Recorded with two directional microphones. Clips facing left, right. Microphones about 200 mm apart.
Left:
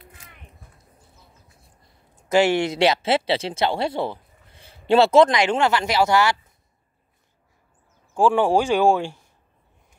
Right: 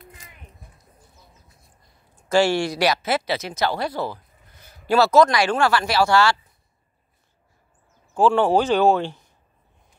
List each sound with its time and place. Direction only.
2.1 s speech: 20° left (ahead or behind)
8.1 s speech: 15° left (ahead or behind)